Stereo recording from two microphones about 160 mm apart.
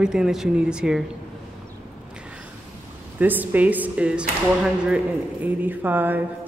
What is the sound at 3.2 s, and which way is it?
A man's voice, 10° right (ahead or behind).